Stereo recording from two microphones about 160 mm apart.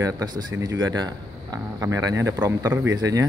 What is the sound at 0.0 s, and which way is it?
A man's voice, 25° right (ahead or behind).